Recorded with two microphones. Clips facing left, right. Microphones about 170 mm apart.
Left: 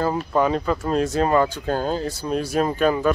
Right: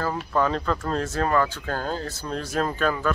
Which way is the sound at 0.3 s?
15° left (ahead or behind).